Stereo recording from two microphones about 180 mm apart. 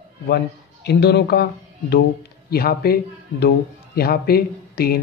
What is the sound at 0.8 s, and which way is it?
Speech, 70° left (ahead or behind).